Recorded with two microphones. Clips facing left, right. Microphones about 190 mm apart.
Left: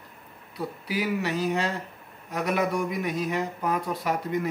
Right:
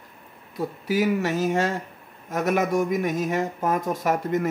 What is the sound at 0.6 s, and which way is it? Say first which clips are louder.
Speech: right 6 dB; 45° right (ahead or behind).